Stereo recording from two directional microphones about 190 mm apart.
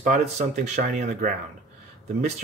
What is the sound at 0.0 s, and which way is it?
Speech, 40° right (ahead or behind).